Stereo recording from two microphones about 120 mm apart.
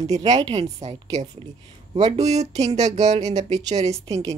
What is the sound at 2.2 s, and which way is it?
Speech, 65° right (ahead or behind).